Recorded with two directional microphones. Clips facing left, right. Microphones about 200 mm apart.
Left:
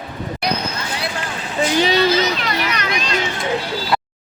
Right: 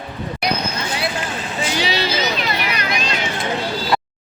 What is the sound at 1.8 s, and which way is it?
Speech, 45° left (ahead or behind).